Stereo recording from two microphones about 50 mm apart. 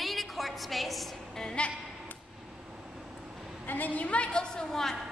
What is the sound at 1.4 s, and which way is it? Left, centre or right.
Speech, centre.